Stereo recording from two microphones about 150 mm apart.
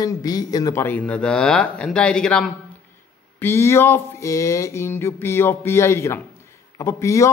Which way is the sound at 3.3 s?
15° left (ahead or behind).